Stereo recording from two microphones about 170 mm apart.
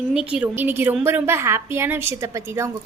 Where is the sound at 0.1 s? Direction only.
5° right (ahead or behind).